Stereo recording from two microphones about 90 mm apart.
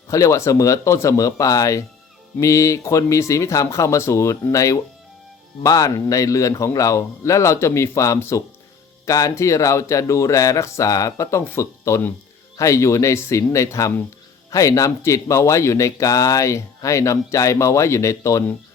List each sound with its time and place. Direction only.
0.1 s speech: 35° left (ahead or behind)